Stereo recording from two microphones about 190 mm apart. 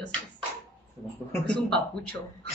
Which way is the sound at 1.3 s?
5° left (ahead or behind).